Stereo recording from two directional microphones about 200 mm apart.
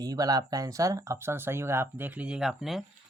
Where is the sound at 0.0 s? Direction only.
20° right (ahead or behind).